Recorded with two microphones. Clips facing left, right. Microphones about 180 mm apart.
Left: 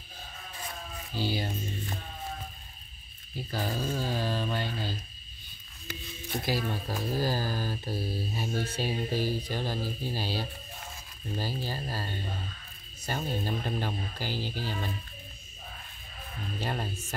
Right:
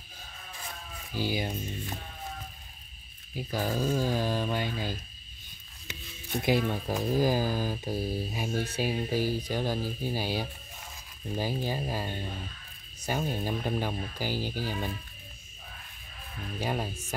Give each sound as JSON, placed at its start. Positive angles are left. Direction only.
{"t": 1.1, "sound": "speech", "side_deg": -15}
{"t": 3.3, "sound": "speech", "side_deg": -10}
{"t": 6.4, "sound": "speech", "side_deg": -20}
{"t": 16.5, "sound": "speech", "side_deg": -10}